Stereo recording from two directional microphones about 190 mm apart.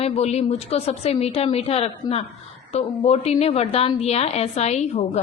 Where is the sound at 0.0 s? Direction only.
35° left (ahead or behind).